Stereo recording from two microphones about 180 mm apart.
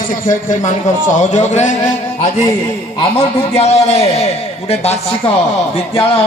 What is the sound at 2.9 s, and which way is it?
A man's voice, 30° left (ahead or behind).